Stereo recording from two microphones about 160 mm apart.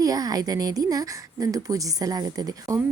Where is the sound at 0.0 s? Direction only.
25° right (ahead or behind).